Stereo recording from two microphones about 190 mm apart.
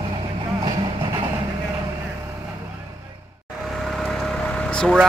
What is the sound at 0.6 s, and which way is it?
Vehicle, 25° right (ahead or behind).